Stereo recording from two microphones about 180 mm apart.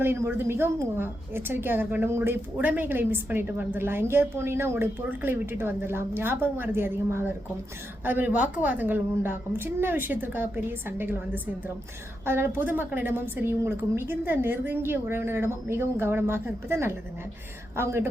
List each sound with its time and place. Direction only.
0.0 s a woman's voice: 15° right (ahead or behind)